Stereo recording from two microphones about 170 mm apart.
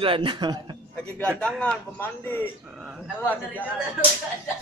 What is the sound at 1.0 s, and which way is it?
A man's voice, 5° left (ahead or behind).